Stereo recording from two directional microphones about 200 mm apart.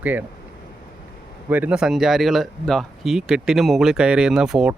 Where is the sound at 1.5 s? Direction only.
5° right (ahead or behind).